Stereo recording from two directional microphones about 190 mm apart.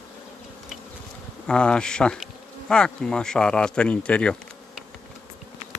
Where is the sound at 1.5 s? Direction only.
5° left (ahead or behind).